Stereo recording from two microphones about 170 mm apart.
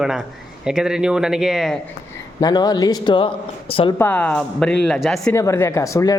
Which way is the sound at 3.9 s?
10° left (ahead or behind).